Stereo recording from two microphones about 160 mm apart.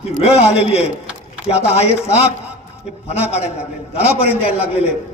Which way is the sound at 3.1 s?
40° left (ahead or behind).